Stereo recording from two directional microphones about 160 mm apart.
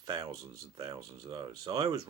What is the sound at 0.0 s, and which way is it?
Speech, 25° right (ahead or behind).